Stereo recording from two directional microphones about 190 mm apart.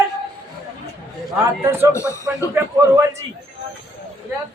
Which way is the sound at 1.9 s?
15° left (ahead or behind).